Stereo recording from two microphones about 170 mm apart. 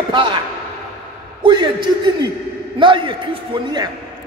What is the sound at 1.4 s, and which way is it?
Speech, 25° right (ahead or behind).